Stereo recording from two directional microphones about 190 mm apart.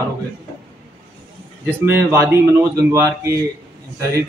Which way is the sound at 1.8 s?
15° right (ahead or behind).